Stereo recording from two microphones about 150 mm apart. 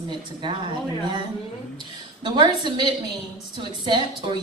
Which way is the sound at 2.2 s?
30° right (ahead or behind).